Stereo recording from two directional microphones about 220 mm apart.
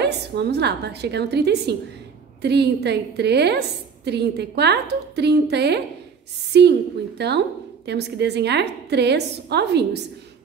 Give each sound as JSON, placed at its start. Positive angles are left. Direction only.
{"t": 0.0, "sound": "a woman's voice", "side_deg": -50}